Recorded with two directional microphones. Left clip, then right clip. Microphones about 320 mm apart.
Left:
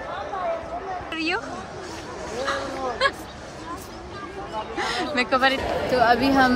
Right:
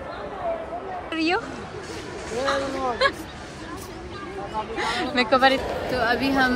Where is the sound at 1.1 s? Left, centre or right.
Centre.